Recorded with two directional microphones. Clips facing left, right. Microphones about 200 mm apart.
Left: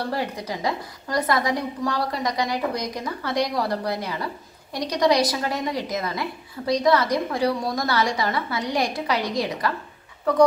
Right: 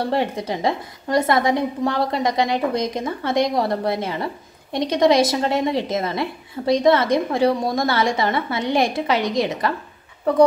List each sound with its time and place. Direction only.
0.0 s a woman's voice: 25° right (ahead or behind)